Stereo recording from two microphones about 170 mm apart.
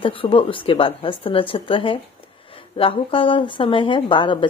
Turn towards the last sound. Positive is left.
turn(degrees=30)  # may be behind; listen again after turning